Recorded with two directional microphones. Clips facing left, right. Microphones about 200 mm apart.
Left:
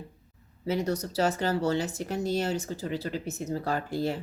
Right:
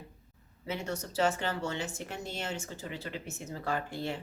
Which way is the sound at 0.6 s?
35° left (ahead or behind).